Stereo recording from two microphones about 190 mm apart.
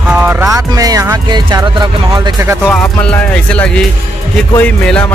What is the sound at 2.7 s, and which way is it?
Music, 5° left (ahead or behind).